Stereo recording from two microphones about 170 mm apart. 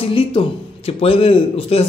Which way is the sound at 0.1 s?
30° left (ahead or behind).